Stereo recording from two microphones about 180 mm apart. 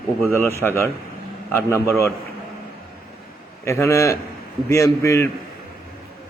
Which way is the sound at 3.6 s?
15° left (ahead or behind).